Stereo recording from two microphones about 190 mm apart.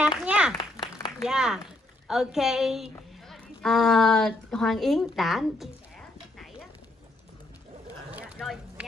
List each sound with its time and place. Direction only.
0.2 s speech: 5° right (ahead or behind)
0.6 s a sound: 25° left (ahead or behind)
1.2 s a woman's voice: centre (ahead or behind)
8.4 s speech: centre (ahead or behind)